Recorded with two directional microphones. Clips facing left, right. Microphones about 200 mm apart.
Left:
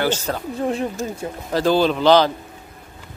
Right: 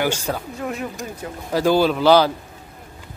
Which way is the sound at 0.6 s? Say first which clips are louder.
Left 5 dB; 30° left (ahead or behind).